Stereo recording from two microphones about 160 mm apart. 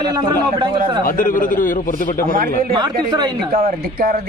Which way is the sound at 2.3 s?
60° right (ahead or behind).